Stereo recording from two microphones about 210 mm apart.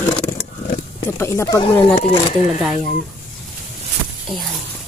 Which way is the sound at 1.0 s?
10° left (ahead or behind).